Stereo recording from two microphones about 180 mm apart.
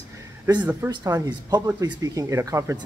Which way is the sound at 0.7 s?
15° right (ahead or behind).